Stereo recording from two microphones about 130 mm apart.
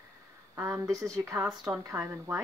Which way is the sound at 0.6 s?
20° right (ahead or behind).